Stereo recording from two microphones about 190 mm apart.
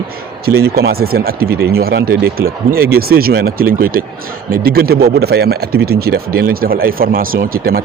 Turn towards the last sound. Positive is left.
turn(degrees=-50)  # may be behind; listen again after turning